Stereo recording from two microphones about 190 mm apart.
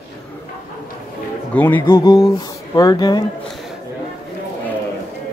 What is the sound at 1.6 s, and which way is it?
Speech, 10° left (ahead or behind).